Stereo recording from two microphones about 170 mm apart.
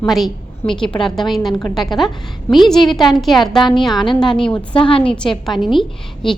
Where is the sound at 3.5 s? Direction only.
25° left (ahead or behind).